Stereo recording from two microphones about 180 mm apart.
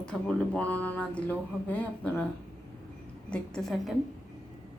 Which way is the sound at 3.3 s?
Centre (ahead or behind).